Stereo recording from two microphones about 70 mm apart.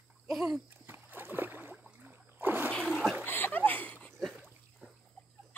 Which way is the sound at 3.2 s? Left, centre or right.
Left.